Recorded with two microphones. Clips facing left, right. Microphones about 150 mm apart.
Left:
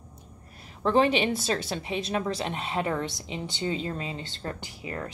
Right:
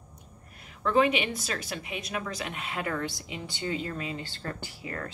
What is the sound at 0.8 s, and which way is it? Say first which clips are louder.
A woman's voice: left 2 dB; 30° left (ahead or behind).